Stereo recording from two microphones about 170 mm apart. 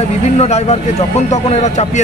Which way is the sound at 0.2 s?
40° left (ahead or behind).